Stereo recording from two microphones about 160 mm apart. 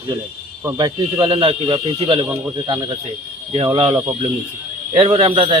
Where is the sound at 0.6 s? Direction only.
20° right (ahead or behind).